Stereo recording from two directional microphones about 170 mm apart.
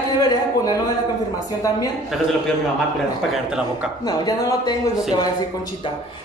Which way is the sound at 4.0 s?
25° left (ahead or behind).